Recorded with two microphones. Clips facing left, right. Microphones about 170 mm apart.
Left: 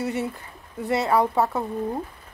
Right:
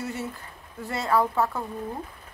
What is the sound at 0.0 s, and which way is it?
Speech, 65° left (ahead or behind).